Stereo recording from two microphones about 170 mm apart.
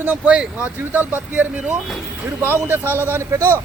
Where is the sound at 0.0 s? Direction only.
10° right (ahead or behind).